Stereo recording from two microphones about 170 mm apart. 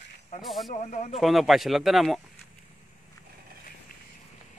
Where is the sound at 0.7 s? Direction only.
45° left (ahead or behind).